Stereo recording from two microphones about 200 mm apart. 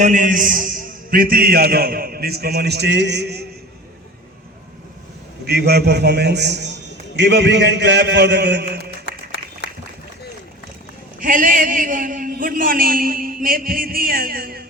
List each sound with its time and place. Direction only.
0.0 s a man's voice: 40° right (ahead or behind); by 3.4 s 55° right (ahead or behind)
5.5 s a man's voice: 55° right (ahead or behind)
9.0 s applause: 60° left (ahead or behind)
11.2 s a man's voice: 45° right (ahead or behind)